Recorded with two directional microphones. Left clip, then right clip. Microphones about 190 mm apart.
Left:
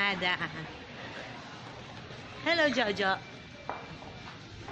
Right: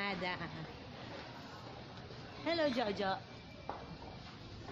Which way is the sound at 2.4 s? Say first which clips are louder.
Left 8 dB; 5° left (ahead or behind).